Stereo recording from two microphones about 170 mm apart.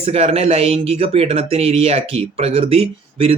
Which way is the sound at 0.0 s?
35° right (ahead or behind).